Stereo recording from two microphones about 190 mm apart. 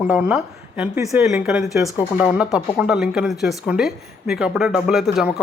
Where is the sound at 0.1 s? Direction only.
5° right (ahead or behind).